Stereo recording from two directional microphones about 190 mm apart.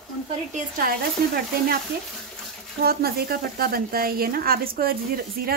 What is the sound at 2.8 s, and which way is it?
A woman's voice, 55° right (ahead or behind).